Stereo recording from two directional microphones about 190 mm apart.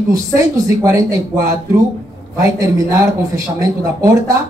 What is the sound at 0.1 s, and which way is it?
Speech, 15° right (ahead or behind).